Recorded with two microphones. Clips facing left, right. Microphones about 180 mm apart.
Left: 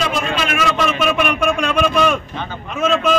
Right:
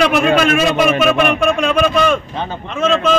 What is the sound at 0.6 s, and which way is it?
Speech, 20° right (ahead or behind).